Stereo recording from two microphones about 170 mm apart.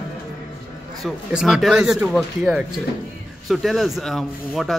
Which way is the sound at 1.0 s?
Centre (ahead or behind).